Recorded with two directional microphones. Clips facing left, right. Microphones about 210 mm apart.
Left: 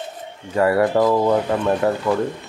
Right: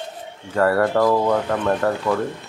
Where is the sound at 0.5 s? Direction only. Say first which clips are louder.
Left 1 dB; 10° left (ahead or behind).